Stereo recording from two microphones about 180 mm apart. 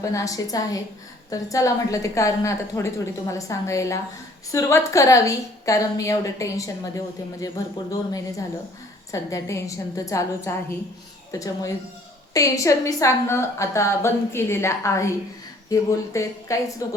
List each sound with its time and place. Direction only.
0.0 s a woman's voice: 20° left (ahead or behind)